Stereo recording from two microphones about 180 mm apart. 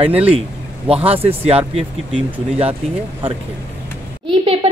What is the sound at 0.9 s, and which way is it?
Music, 35° right (ahead or behind).